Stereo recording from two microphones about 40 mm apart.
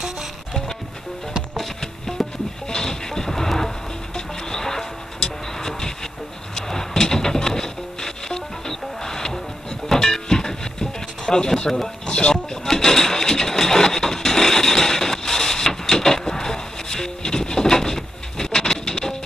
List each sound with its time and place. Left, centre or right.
2.2 s music: centre
2.7 s music: centre
12.6 s a sound: centre